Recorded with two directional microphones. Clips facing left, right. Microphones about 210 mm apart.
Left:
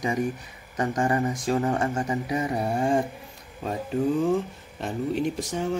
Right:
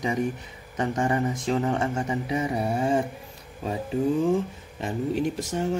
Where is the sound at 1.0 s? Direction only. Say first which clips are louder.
Left 1 dB; 20° right (ahead or behind).